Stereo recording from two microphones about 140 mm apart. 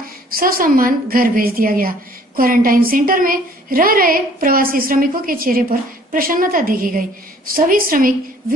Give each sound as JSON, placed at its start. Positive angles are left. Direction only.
{"t": 0.3, "sound": "a woman's voice", "side_deg": -90}